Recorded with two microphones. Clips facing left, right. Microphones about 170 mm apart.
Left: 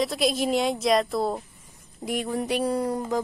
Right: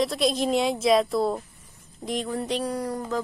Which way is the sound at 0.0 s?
Centre (ahead or behind).